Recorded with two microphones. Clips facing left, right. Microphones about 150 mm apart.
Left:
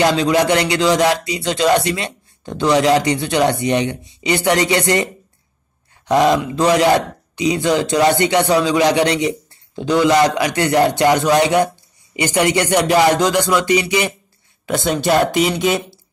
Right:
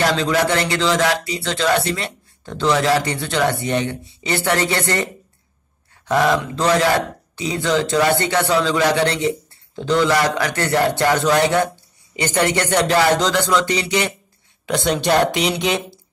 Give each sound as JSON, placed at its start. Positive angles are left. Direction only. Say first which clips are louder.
{"t": 0.0, "sound": "a man's voice", "louder": "left 3 dB", "side_deg": 15}